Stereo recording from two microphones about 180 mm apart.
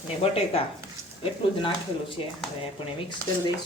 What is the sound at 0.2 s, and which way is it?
Speech, 35° left (ahead or behind).